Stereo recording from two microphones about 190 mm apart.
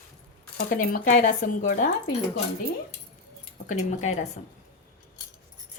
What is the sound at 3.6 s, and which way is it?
Speech, 40° left (ahead or behind).